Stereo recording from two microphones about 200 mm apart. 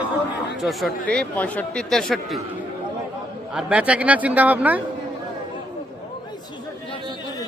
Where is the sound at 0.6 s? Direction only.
Centre (ahead or behind).